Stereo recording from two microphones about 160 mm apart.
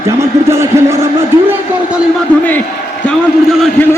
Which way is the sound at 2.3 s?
10° left (ahead or behind).